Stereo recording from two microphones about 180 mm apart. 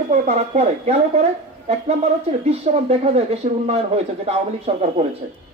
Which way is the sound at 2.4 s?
35° right (ahead or behind).